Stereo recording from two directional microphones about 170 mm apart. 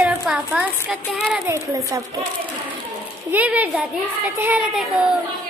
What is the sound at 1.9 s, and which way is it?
Speech, 20° right (ahead or behind).